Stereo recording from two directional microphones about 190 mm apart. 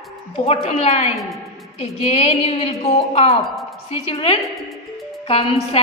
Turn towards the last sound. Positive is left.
turn(degrees=30)  # may be behind; listen again after turning